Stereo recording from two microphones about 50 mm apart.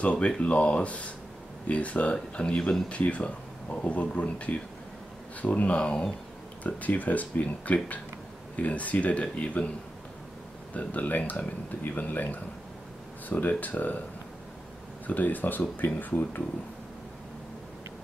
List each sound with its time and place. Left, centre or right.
0.0 s speech: left
6.6 s speech: left
10.7 s speech: left
15.0 s speech: left